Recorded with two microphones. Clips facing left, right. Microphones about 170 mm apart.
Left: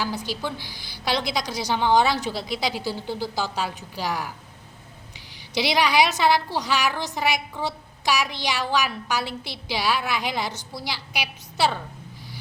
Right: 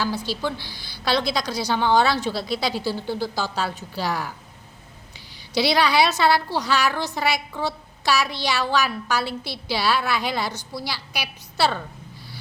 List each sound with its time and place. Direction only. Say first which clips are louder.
0.0 s a woman's voice: right 3 dB; 15° left (ahead or behind)
5.5 s a woman's voice: right 1 dB; 15° left (ahead or behind)